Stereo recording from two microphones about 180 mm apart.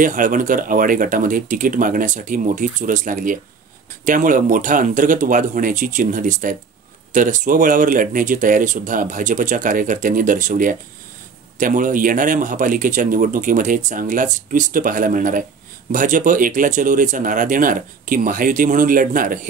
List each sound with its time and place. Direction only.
0.0 s speech: 50° right (ahead or behind)